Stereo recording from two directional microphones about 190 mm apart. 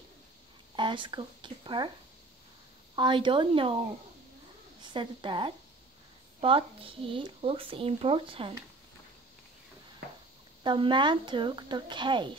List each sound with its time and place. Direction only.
0.7 s speech: 25° right (ahead or behind)
3.0 s speech: 25° right (ahead or behind)
4.8 s speech: 25° right (ahead or behind)
10.6 s speech: 25° right (ahead or behind)